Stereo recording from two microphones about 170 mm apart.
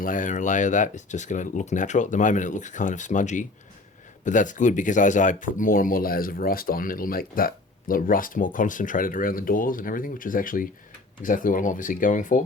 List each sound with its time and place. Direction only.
0.0 s speech: 50° left (ahead or behind)